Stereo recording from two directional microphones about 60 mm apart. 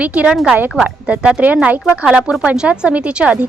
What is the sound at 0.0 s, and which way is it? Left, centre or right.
A woman's voice, right.